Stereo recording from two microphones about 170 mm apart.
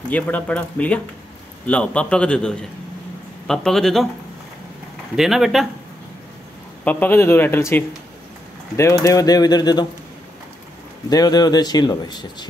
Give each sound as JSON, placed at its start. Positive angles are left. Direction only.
{"t": 0.1, "sound": "a man's voice", "side_deg": 10}
{"t": 5.1, "sound": "a man's voice", "side_deg": 0}
{"t": 6.8, "sound": "speech", "side_deg": 10}
{"t": 11.1, "sound": "speech", "side_deg": 20}